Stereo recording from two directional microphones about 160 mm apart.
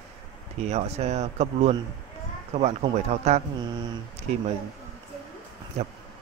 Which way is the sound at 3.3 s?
40° right (ahead or behind).